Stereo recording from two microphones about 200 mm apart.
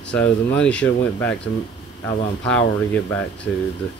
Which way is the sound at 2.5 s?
5° left (ahead or behind).